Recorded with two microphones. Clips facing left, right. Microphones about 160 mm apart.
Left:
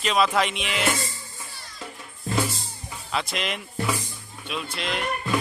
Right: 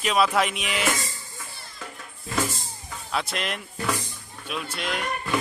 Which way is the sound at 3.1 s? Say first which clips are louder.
Even; centre (ahead or behind).